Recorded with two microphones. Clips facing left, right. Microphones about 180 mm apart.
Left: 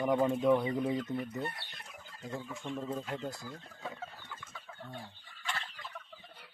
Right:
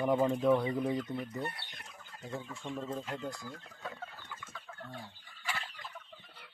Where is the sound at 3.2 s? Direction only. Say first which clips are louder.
Even; 20° left (ahead or behind).